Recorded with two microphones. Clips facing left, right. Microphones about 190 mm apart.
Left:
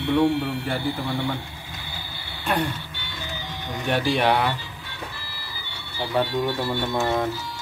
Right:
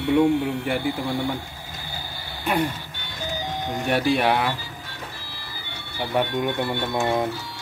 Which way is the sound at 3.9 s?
5° right (ahead or behind).